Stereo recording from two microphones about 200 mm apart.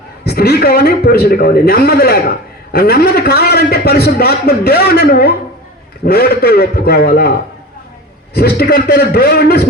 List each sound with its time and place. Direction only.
0.3 s a man's voice: 50° left (ahead or behind)